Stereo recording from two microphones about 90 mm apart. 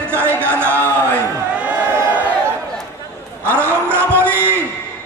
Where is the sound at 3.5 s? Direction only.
25° right (ahead or behind).